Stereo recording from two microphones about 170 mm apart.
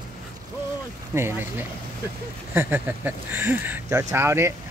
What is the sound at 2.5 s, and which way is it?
Speech, 10° right (ahead or behind).